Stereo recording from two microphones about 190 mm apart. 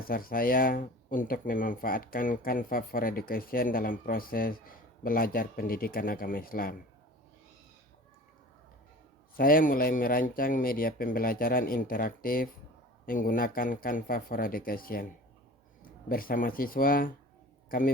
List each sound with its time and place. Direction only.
0.0 s speech: 50° left (ahead or behind)
9.3 s a man's voice: 50° left (ahead or behind)